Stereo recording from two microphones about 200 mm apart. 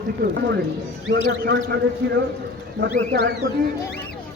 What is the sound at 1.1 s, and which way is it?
A man's voice, 55° right (ahead or behind).